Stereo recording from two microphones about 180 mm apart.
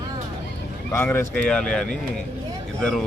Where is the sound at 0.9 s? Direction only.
15° left (ahead or behind).